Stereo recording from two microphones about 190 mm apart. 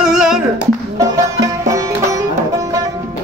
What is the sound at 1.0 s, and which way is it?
Music, 20° right (ahead or behind).